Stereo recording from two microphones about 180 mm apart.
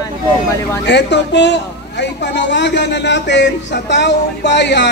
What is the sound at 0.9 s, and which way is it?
A man's voice, 75° left (ahead or behind).